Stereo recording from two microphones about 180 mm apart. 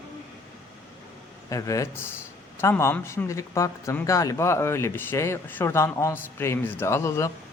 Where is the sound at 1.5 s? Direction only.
15° left (ahead or behind).